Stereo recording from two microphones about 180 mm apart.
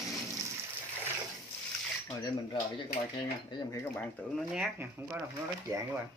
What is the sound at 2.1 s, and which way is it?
Speech, 25° left (ahead or behind).